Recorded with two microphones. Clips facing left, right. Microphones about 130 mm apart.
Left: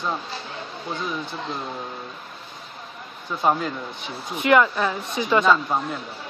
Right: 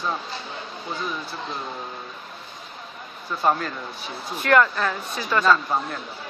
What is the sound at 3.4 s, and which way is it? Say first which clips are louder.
Speech: left 1 dB; 10° left (ahead or behind).